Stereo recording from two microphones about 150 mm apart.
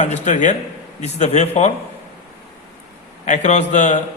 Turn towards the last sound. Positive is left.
turn(degrees=50)  # may be behind; listen again after turning